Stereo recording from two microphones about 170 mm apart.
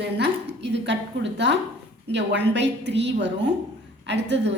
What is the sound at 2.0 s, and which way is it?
A woman's voice, 90° right.